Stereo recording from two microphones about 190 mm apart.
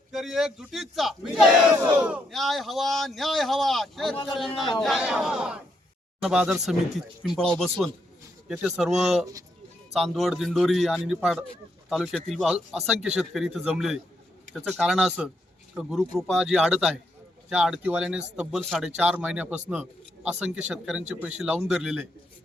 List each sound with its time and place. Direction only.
0.1 s speech: centre (ahead or behind)
1.7 s speech: 15° right (ahead or behind)
2.0 s speech: 5° right (ahead or behind)